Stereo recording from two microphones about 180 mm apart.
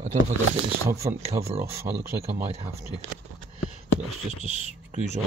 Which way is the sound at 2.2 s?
35° right (ahead or behind).